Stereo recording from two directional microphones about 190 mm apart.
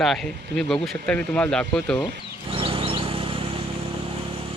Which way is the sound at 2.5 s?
30° right (ahead or behind).